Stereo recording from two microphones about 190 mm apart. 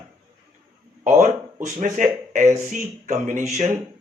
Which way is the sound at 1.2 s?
40° right (ahead or behind).